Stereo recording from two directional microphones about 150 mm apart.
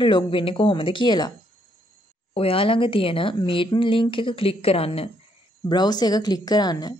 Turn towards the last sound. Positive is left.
turn(degrees=25)  # may be behind; listen again after turning